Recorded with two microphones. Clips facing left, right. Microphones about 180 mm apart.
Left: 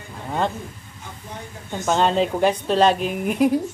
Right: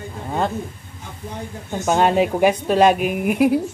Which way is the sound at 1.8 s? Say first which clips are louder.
Right 2 dB; 10° right (ahead or behind).